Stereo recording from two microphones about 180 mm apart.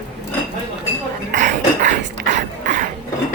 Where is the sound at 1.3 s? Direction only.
40° right (ahead or behind).